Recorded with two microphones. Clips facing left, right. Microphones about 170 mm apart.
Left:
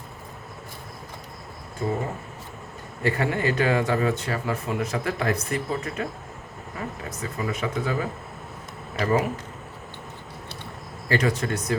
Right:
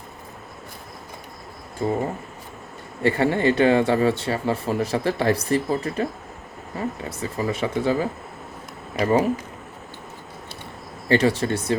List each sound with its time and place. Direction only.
1.8 s speech: 25° right (ahead or behind)
3.0 s speech: 30° right (ahead or behind)
11.1 s speech: 30° right (ahead or behind)